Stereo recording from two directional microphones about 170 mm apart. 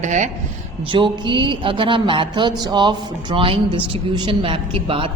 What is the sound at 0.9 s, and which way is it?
A woman's voice, 30° right (ahead or behind).